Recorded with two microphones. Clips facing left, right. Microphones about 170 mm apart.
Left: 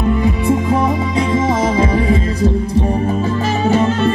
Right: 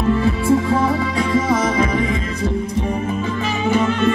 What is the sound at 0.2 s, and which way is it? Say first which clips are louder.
Music: left 1 dB; 20° left (ahead or behind).